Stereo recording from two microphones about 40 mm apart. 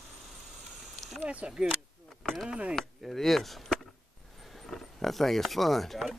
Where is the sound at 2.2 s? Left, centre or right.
Centre.